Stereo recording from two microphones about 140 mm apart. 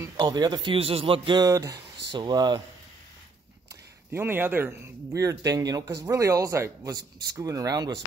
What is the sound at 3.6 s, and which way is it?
Speech, 15° right (ahead or behind).